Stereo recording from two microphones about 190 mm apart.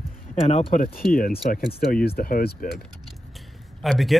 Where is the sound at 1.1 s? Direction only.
50° left (ahead or behind).